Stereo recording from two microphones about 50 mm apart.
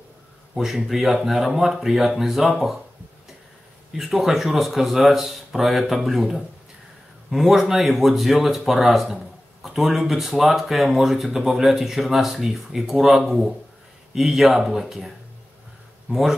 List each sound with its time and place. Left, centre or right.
0.6 s speech: centre
3.9 s speech: centre